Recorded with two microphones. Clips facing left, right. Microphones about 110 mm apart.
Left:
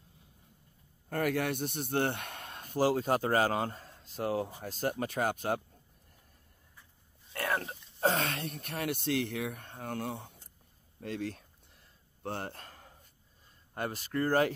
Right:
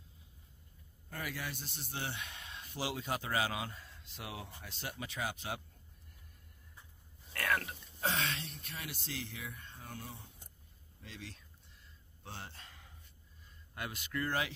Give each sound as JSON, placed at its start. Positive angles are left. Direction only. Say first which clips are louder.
{"t": 1.0, "sound": "a man's voice", "louder": "left 12 dB", "side_deg": 55}
{"t": 7.3, "sound": "pig", "louder": "left 2 dB", "side_deg": 30}
{"t": 8.0, "sound": "speech", "louder": "left 7 dB", "side_deg": 45}
{"t": 11.0, "sound": "speech", "louder": "left 14 dB", "side_deg": 55}
{"t": 12.2, "sound": "a sound", "louder": "left 11 dB", "side_deg": 55}
{"t": 13.7, "sound": "speech", "louder": "left 7 dB", "side_deg": 40}